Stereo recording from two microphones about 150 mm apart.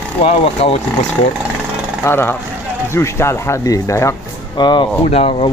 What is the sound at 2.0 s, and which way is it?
Speech, 15° left (ahead or behind).